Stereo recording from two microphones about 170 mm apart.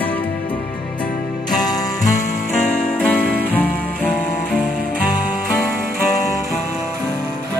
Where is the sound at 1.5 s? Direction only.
25° left (ahead or behind).